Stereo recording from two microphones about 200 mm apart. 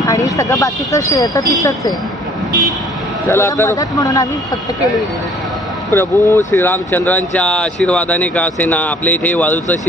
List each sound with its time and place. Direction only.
0.0 s speech: 15° left (ahead or behind)
3.3 s speech: 10° left (ahead or behind)
5.9 s speech: 15° left (ahead or behind)